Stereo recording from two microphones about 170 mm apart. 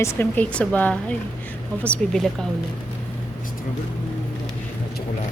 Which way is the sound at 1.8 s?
5° left (ahead or behind).